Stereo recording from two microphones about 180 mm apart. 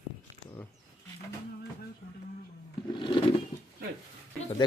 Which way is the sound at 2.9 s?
25° left (ahead or behind).